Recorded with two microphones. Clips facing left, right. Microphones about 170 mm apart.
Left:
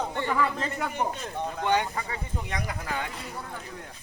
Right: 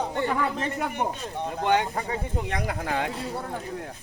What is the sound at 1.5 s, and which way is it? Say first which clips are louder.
Speech: right 3 dB; 35° right (ahead or behind).